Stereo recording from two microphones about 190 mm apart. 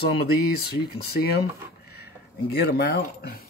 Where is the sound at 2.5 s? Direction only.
55° left (ahead or behind).